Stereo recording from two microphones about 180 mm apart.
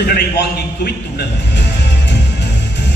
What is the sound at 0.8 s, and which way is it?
Speech, 60° left (ahead or behind).